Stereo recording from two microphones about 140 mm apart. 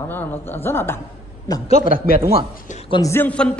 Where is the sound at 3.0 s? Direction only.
15° left (ahead or behind).